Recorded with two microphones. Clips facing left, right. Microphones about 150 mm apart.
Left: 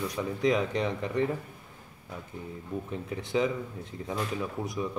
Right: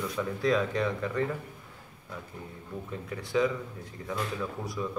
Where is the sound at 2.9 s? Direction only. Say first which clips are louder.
Left 2 dB; 20° left (ahead or behind).